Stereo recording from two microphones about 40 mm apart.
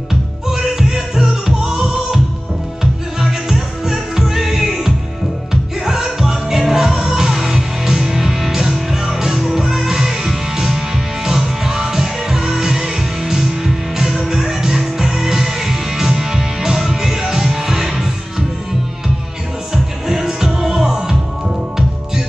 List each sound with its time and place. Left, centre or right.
0.1 s music: centre
19.7 s music: centre